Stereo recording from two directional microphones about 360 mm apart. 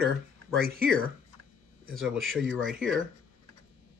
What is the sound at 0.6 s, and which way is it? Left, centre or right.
Speech, right.